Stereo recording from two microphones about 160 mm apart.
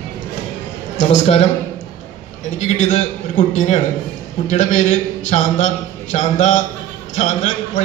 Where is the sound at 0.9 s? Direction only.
45° left (ahead or behind).